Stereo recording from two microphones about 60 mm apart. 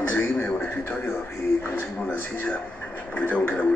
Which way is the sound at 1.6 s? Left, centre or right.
Left.